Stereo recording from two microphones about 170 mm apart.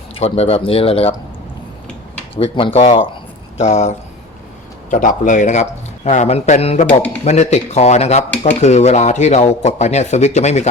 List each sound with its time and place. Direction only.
0.1 s speech: 35° left (ahead or behind)
2.4 s a man's voice: 30° left (ahead or behind)